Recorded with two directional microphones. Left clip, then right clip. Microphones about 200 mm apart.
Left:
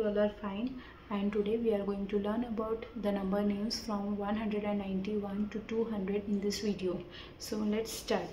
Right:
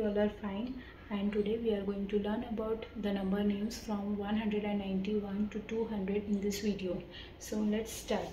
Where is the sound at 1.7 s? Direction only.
20° left (ahead or behind).